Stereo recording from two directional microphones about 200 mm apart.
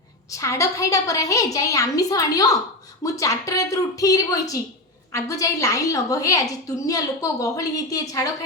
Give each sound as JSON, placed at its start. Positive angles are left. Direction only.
{"t": 0.3, "sound": "a woman's voice", "side_deg": 15}